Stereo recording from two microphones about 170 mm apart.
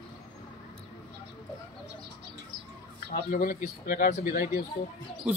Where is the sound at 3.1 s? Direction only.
60° left (ahead or behind).